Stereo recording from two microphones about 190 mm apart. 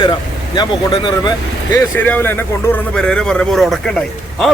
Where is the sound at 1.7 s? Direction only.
10° left (ahead or behind).